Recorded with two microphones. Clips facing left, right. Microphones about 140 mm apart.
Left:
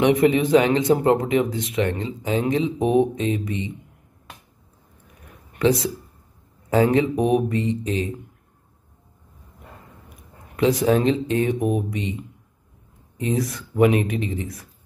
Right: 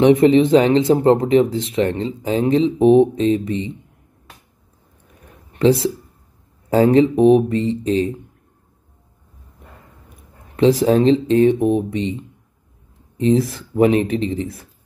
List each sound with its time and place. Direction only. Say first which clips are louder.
0.0 s speech: right 6 dB; 30° right (ahead or behind)
5.2 s a sound: right 5 dB; 30° right (ahead or behind)
6.7 s speech: right 5 dB; 35° right (ahead or behind)
10.5 s speech: right 4 dB; 30° right (ahead or behind)